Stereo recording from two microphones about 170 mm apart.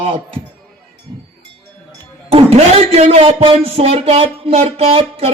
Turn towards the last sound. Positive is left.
turn(degrees=-35)  # may be behind; listen again after turning